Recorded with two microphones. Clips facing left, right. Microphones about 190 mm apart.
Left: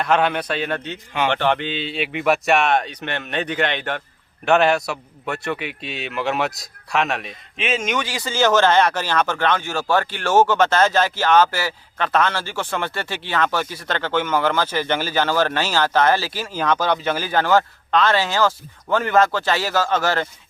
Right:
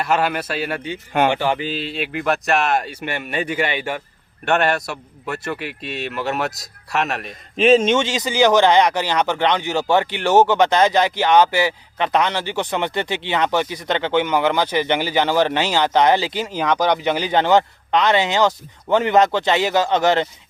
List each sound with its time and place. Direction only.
0.0 s a man's voice: 5° right (ahead or behind)
7.5 s speech: 35° right (ahead or behind); by 20.2 s 20° right (ahead or behind)